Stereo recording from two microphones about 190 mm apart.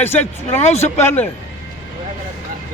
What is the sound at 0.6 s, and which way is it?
Speech, 35° left (ahead or behind).